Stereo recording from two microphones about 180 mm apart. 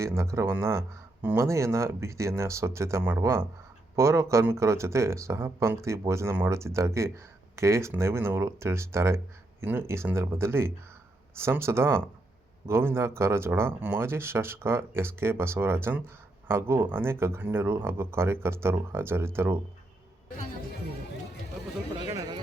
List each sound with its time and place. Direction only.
0.0 s speech: 15° right (ahead or behind)